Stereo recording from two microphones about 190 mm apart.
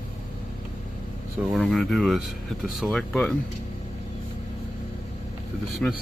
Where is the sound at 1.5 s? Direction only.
Centre (ahead or behind).